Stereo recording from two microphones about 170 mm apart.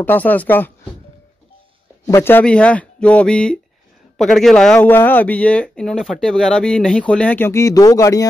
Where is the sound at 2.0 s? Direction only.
15° left (ahead or behind).